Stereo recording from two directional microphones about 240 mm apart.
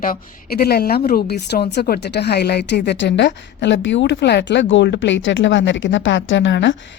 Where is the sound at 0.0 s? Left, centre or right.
Left.